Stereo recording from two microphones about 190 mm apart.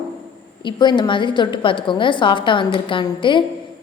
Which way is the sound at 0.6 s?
25° left (ahead or behind).